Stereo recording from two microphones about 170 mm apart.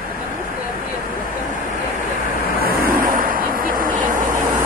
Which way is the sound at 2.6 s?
60° right (ahead or behind).